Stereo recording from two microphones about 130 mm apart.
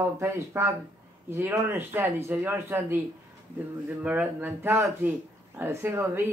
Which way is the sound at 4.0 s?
10° right (ahead or behind).